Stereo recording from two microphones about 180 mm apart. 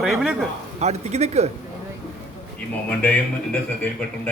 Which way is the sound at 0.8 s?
35° right (ahead or behind).